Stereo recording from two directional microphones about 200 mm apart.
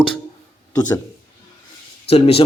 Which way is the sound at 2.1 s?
30° left (ahead or behind).